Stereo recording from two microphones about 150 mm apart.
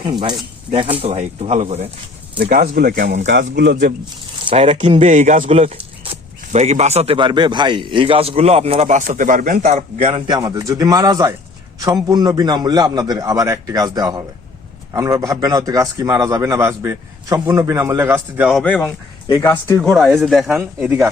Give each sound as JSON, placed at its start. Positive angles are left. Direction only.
{"t": 0.0, "sound": "speech", "side_deg": -30}
{"t": 2.5, "sound": "speech", "side_deg": -75}
{"t": 3.9, "sound": "speech", "side_deg": -65}
{"t": 4.4, "sound": "speech", "side_deg": -40}
{"t": 10.1, "sound": "a man's voice", "side_deg": -35}
{"t": 18.5, "sound": "speech", "side_deg": 10}
{"t": 19.3, "sound": "speech", "side_deg": 20}
{"t": 19.8, "sound": "speech", "side_deg": 0}
{"t": 20.6, "sound": "a man's voice", "side_deg": -15}